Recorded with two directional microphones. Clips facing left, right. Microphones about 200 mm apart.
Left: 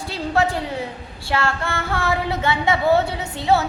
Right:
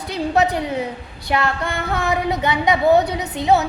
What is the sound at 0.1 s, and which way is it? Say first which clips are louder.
A woman's voice: right 3 dB; 20° right (ahead or behind).